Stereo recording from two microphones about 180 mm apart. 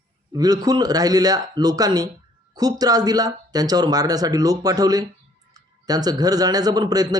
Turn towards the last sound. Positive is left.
turn(degrees=-20)  # may be behind; listen again after turning